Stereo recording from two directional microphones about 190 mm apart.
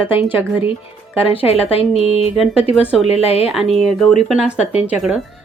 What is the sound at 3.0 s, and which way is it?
Speech, 30° left (ahead or behind).